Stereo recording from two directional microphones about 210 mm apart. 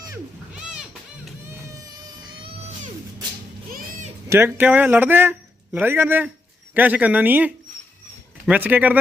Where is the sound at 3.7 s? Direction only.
35° right (ahead or behind).